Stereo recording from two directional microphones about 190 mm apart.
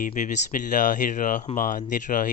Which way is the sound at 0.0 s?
40° left (ahead or behind).